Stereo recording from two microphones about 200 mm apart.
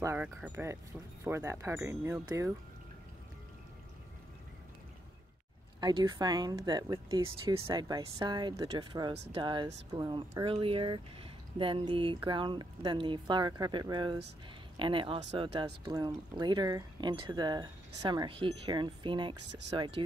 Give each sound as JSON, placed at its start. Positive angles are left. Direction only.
{"t": 0.0, "sound": "speech", "side_deg": -10}
{"t": 5.8, "sound": "speech", "side_deg": -20}